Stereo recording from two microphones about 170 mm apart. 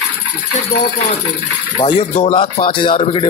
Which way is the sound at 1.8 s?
25° left (ahead or behind).